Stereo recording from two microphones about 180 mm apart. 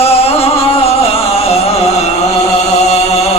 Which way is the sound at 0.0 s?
35° left (ahead or behind).